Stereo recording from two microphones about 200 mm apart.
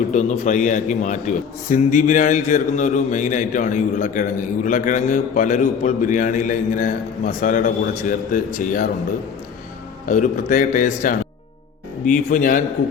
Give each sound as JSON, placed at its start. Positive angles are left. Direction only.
{"t": 0.1, "sound": "a man's voice", "side_deg": 35}
{"t": 10.1, "sound": "a man's voice", "side_deg": 40}